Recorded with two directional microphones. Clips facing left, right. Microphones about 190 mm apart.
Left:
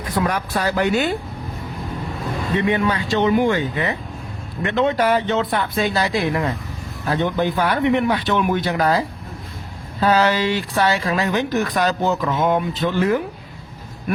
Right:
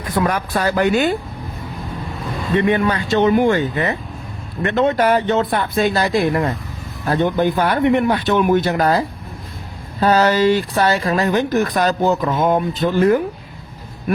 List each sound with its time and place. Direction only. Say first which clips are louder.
0.3 s speech: right 2 dB; 50° right (ahead or behind)
2.6 s speech: right 3 dB; 50° right (ahead or behind)
10.0 s speech: right 3 dB; 40° right (ahead or behind)